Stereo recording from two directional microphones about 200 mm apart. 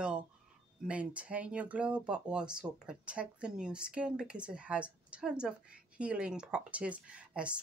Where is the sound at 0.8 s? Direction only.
5° right (ahead or behind).